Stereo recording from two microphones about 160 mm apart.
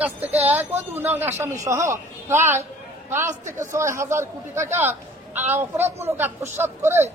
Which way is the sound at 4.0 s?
15° right (ahead or behind).